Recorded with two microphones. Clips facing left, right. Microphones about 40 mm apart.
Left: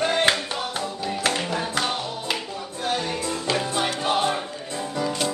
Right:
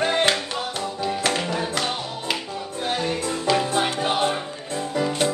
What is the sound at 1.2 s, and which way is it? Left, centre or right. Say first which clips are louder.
Music: left 1 dB; centre.